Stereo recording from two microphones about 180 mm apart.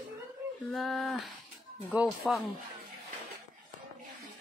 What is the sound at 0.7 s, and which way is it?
Speech, centre (ahead or behind).